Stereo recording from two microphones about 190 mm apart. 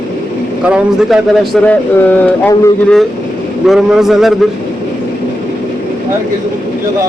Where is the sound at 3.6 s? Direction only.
Centre (ahead or behind).